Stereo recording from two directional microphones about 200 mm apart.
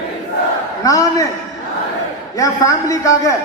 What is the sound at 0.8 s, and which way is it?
Speech, 15° left (ahead or behind).